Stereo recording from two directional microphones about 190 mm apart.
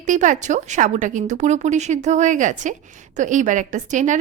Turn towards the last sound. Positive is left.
turn(degrees=-40)  # may be behind; listen again after turning